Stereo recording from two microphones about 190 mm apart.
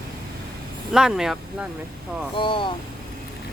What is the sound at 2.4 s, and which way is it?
Speech, 25° left (ahead or behind).